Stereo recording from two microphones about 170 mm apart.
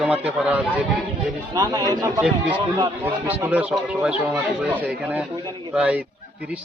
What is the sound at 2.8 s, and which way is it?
Speech, 10° right (ahead or behind).